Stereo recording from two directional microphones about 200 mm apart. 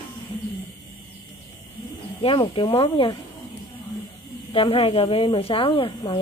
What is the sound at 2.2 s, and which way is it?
Speech, 25° left (ahead or behind).